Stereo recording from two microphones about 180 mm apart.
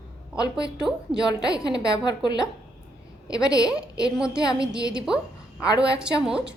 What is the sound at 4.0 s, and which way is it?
A woman's voice, 5° right (ahead or behind).